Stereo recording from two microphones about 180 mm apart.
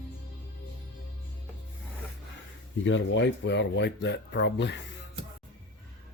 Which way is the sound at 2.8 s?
90° left.